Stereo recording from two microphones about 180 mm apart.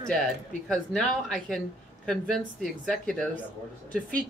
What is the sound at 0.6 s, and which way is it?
Speech, 5° left (ahead or behind).